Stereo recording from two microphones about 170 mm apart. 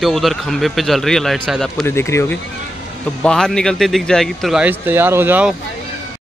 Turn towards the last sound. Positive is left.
turn(degrees=-10)  # may be behind; listen again after turning